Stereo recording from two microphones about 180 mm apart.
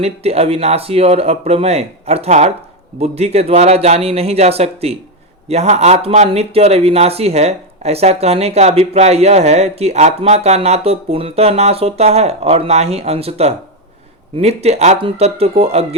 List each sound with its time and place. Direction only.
0.0 s a man's voice: 35° right (ahead or behind)